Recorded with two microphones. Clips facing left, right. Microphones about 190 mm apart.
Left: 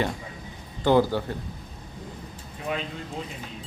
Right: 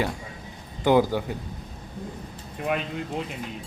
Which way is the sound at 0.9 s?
15° right (ahead or behind).